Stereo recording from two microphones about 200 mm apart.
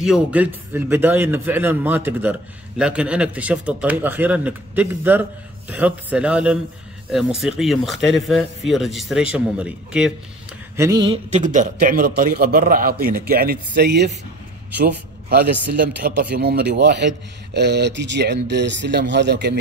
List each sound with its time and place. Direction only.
0.0 s a man's voice: 5° right (ahead or behind)
10.8 s a sound: 20° right (ahead or behind)
11.3 s a man's voice: 40° right (ahead or behind); by 14.1 s 55° right (ahead or behind)
16.3 s speech: 50° right (ahead or behind)